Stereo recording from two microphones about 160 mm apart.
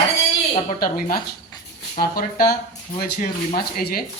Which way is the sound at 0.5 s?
55° left (ahead or behind).